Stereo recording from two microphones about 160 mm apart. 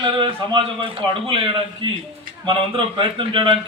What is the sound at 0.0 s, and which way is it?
A man's voice, 30° right (ahead or behind).